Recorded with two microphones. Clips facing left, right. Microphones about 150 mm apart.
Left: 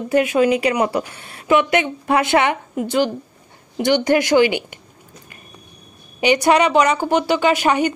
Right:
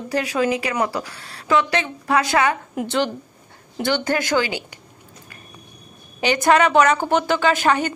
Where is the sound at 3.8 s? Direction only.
15° left (ahead or behind).